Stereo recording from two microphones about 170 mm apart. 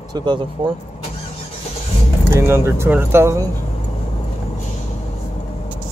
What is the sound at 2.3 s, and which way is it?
Speech, 15° right (ahead or behind).